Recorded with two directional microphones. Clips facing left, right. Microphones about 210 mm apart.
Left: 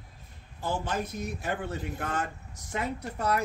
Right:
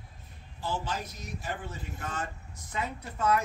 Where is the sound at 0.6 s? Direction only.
50° left (ahead or behind).